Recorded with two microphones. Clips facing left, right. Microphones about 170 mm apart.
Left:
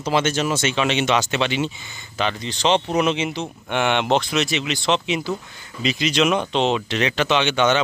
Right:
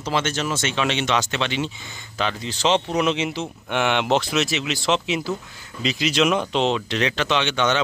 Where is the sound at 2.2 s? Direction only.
5° right (ahead or behind).